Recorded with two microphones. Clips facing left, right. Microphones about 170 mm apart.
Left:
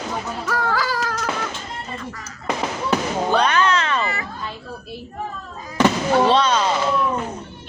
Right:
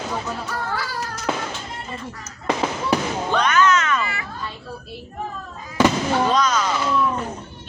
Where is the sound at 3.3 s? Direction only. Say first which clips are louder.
Right 1 dB; 30° left (ahead or behind).